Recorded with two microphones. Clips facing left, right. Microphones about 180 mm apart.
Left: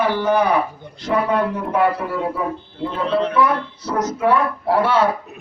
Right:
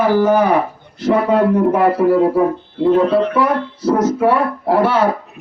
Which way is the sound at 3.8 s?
30° right (ahead or behind).